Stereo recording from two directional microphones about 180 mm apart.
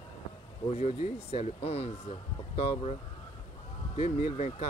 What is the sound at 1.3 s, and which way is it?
Speech, 35° left (ahead or behind).